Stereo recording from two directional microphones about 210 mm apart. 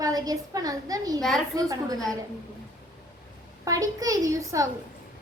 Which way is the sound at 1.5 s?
15° right (ahead or behind).